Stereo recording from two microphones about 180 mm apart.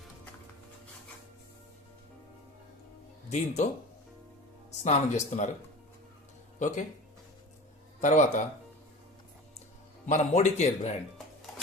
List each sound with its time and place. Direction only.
3.2 s speech: 40° left (ahead or behind)
4.8 s speech: 40° left (ahead or behind)
6.6 s speech: 45° left (ahead or behind)
8.0 s speech: 40° left (ahead or behind)
10.1 s speech: 40° left (ahead or behind)